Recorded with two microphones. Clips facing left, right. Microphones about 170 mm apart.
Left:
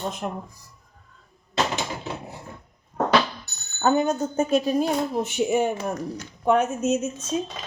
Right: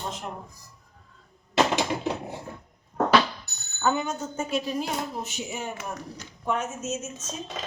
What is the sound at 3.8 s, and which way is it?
A woman's voice, 40° left (ahead or behind).